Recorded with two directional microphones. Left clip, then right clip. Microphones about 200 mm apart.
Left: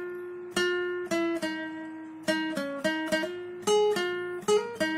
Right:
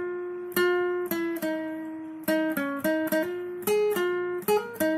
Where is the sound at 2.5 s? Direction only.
20° right (ahead or behind).